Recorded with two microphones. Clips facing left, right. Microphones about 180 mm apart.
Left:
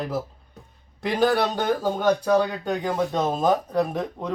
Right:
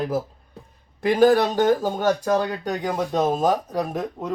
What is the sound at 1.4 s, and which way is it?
Speech, 10° right (ahead or behind).